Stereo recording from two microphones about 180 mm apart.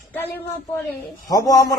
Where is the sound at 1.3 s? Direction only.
20° left (ahead or behind).